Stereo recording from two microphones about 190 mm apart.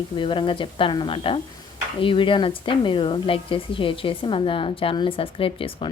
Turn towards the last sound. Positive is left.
turn(degrees=30)  # may be behind; listen again after turning